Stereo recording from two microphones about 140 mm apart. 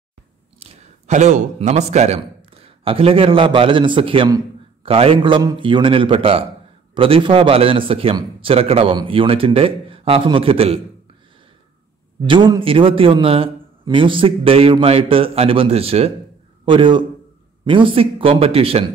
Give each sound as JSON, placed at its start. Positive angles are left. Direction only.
{"t": 0.6, "sound": "a man's voice", "side_deg": -50}
{"t": 12.3, "sound": "a man's voice", "side_deg": -35}